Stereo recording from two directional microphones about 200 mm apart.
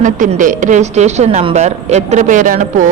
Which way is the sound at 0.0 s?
40° right (ahead or behind).